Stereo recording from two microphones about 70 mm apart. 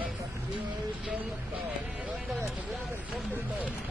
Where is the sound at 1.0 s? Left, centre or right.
Right.